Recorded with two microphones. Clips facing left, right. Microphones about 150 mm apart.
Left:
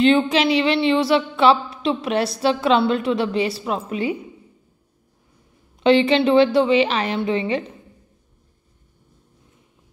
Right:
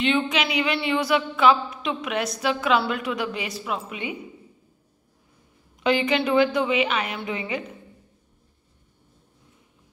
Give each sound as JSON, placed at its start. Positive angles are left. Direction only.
{"t": 0.0, "sound": "a woman's voice", "side_deg": 35}
{"t": 5.8, "sound": "a woman's voice", "side_deg": 30}